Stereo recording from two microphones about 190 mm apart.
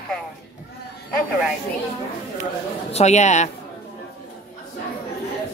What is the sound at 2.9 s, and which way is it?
Speech, 35° left (ahead or behind).